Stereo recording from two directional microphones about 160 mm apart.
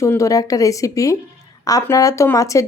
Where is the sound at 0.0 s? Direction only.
20° left (ahead or behind).